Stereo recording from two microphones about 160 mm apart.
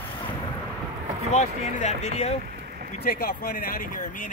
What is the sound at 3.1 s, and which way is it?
Speech, 70° left (ahead or behind).